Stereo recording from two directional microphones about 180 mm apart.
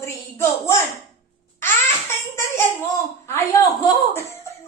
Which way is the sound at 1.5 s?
15° left (ahead or behind).